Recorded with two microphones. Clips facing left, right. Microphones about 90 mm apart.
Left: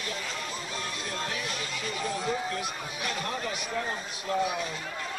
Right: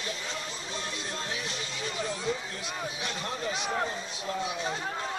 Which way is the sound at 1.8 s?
30° right (ahead or behind).